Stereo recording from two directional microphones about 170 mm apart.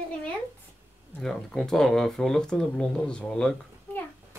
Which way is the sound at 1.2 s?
5° left (ahead or behind).